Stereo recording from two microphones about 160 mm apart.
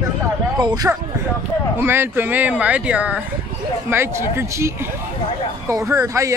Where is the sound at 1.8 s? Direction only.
15° right (ahead or behind).